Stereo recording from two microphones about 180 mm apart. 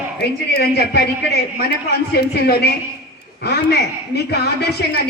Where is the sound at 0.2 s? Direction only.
60° left (ahead or behind).